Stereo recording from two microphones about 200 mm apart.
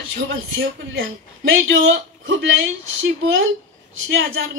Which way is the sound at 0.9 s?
75° right (ahead or behind).